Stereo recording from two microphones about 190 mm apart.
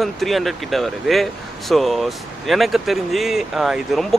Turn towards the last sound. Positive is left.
turn(degrees=0)  # may be behind; listen again after turning